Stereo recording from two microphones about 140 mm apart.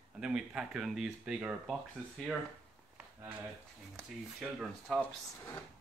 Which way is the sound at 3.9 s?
Centre (ahead or behind).